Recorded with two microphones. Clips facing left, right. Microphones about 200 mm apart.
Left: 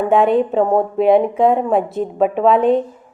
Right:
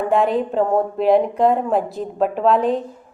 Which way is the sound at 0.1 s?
Centre (ahead or behind).